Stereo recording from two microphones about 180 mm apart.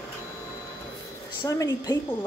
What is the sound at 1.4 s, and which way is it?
Speech, 20° left (ahead or behind).